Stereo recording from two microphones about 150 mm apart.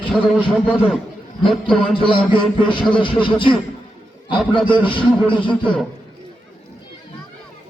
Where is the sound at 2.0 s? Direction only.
35° left (ahead or behind).